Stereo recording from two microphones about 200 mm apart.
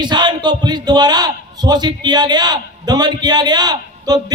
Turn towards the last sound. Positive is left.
turn(degrees=-20)  # may be behind; listen again after turning